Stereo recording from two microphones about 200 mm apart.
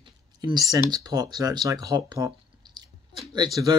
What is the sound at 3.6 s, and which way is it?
Speech, 20° right (ahead or behind).